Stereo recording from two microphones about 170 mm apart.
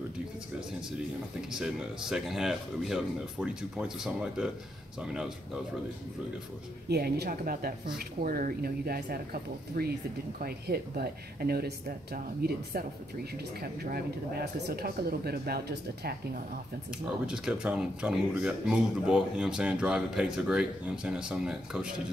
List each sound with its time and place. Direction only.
1.5 s speech: 5° right (ahead or behind)
6.9 s speech: 65° right (ahead or behind)
17.3 s speech: 5° right (ahead or behind)